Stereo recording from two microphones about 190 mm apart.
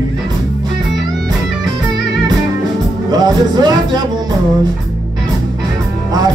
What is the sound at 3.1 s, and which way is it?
Music, 20° right (ahead or behind).